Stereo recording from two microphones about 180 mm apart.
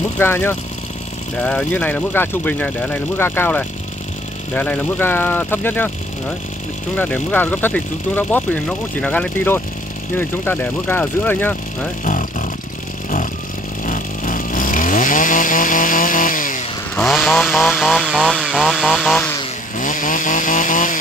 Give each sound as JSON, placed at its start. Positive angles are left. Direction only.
{"t": 0.2, "sound": "speech", "side_deg": 15}
{"t": 7.0, "sound": "speech", "side_deg": 10}
{"t": 12.0, "sound": "speech", "side_deg": 45}
{"t": 13.8, "sound": "chainsaw", "side_deg": 45}
{"t": 16.9, "sound": "chainsaw", "side_deg": 0}
{"t": 19.8, "sound": "chainsaw", "side_deg": 45}